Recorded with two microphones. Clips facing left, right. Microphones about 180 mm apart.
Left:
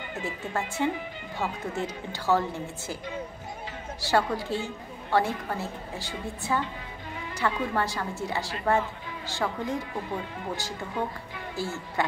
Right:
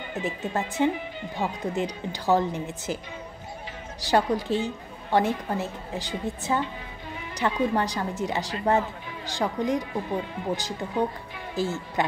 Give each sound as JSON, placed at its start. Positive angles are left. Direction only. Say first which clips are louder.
{"t": 0.1, "sound": "speech", "louder": "right 4 dB", "side_deg": -20}
{"t": 4.0, "sound": "a woman's voice", "louder": "right 3 dB", "side_deg": -20}